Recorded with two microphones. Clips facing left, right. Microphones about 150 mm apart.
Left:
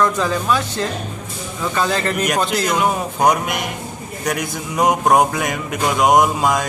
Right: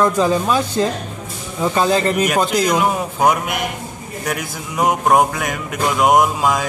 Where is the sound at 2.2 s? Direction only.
5° right (ahead or behind).